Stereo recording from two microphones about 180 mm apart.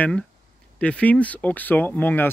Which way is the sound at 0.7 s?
5° left (ahead or behind).